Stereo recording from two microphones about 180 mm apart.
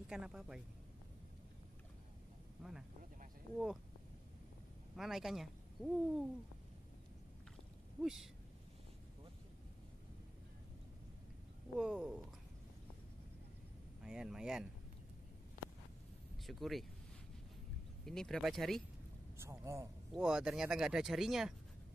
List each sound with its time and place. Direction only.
0.1 s speech: 5° right (ahead or behind)
3.5 s speech: centre (ahead or behind)
4.9 s speech: centre (ahead or behind)
8.0 s speech: centre (ahead or behind)
11.8 s speech: 5° right (ahead or behind)
14.0 s speech: 5° right (ahead or behind)
16.4 s speech: centre (ahead or behind)
18.0 s speech: centre (ahead or behind)
19.3 s a man's voice: 15° right (ahead or behind)
20.1 s speech: 5° right (ahead or behind)